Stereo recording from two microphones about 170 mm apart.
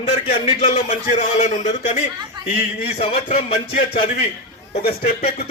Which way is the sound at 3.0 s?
30° left (ahead or behind).